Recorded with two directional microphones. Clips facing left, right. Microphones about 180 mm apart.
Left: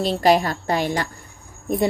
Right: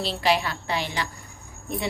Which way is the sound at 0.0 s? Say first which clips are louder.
Left 7 dB; 45° left (ahead or behind).